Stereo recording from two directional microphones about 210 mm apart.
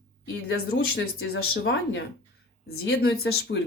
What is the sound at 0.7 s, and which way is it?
A woman's voice, 50° left (ahead or behind).